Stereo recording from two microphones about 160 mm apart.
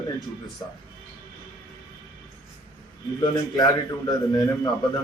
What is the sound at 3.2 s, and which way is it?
A man's voice, 25° left (ahead or behind).